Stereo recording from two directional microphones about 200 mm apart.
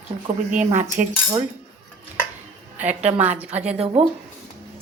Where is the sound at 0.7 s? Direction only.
35° right (ahead or behind).